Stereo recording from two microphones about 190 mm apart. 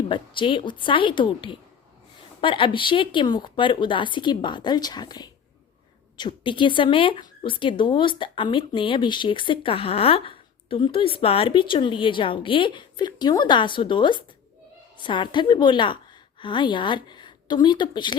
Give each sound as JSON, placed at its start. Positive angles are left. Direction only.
{"t": 0.1, "sound": "a woman's voice", "side_deg": 25}